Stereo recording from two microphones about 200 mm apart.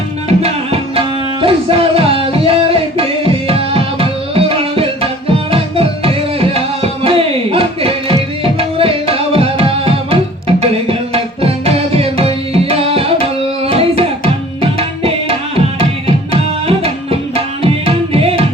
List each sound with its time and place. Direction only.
0.3 s tabla: 30° right (ahead or behind)
5.5 s music: 30° right (ahead or behind)
14.6 s tabla: 30° right (ahead or behind)